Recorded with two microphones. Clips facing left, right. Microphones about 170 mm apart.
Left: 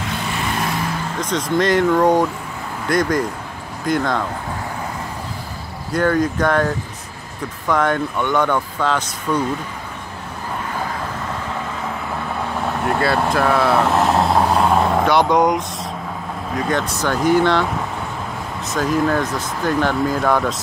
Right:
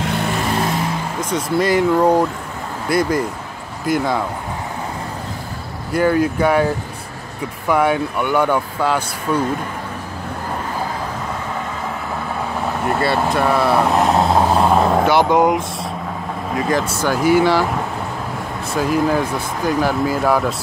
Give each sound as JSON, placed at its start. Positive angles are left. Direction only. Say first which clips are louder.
{"t": 1.3, "sound": "speech", "louder": "even", "side_deg": -10}
{"t": 5.9, "sound": "speech", "louder": "right 2 dB", "side_deg": -5}
{"t": 12.5, "sound": "speech", "louder": "even", "side_deg": 0}
{"t": 18.8, "sound": "speech", "louder": "right 1 dB", "side_deg": -5}